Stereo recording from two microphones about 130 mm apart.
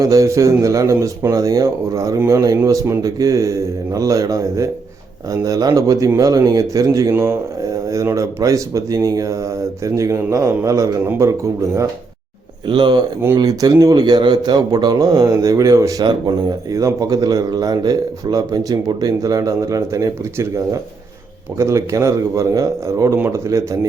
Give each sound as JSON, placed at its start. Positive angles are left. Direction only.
{"t": 0.0, "sound": "speech", "side_deg": -25}
{"t": 12.6, "sound": "speech", "side_deg": -35}
{"t": 21.6, "sound": "speech", "side_deg": -20}